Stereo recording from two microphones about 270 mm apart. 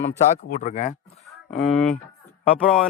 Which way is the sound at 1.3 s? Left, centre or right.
Centre.